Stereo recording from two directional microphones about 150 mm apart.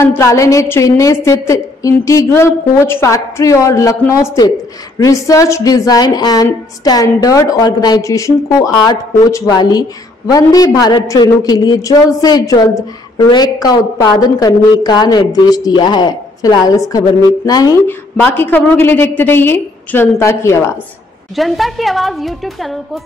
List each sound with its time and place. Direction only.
0.0 s a woman's voice: 15° left (ahead or behind)
17.8 s a woman's voice: 15° left (ahead or behind)
21.4 s a woman's voice: centre (ahead or behind)